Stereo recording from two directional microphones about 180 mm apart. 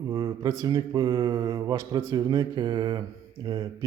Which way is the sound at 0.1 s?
20° right (ahead or behind).